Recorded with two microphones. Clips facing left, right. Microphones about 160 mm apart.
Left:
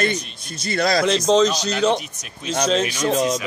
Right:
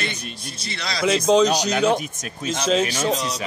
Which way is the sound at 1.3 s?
5° right (ahead or behind).